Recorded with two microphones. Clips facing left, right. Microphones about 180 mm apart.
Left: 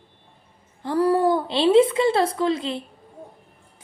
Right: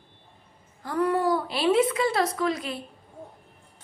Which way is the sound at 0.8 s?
30° left (ahead or behind).